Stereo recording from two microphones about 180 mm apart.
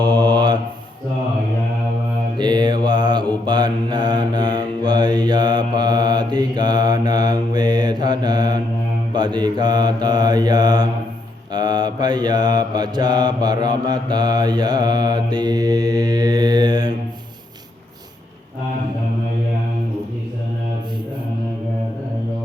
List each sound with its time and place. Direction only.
0.0 s mantra: 25° right (ahead or behind)
2.4 s mantra: 25° right (ahead or behind)